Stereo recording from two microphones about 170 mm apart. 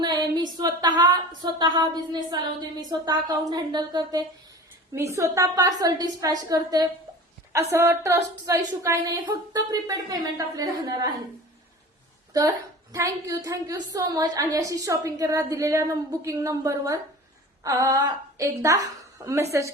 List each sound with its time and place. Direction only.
0.0 s a sound: 25° right (ahead or behind)
1.5 s a woman's voice: 25° right (ahead or behind)
12.9 s a woman's voice: 20° right (ahead or behind)